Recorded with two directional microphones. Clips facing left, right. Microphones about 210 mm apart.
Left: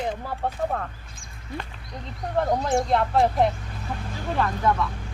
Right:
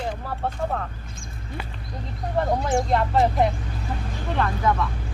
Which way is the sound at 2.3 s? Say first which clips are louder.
Even; centre (ahead or behind).